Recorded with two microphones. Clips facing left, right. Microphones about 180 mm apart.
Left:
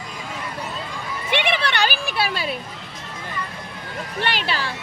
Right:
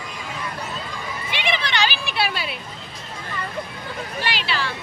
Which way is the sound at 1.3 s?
60° left (ahead or behind).